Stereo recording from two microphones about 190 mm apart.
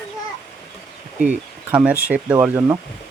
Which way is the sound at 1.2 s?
5° right (ahead or behind).